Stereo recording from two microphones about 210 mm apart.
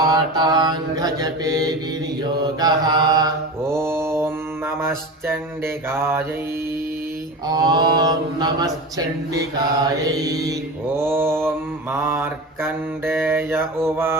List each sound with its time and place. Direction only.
0.0 s mantra: 20° right (ahead or behind)
7.4 s mantra: 20° right (ahead or behind)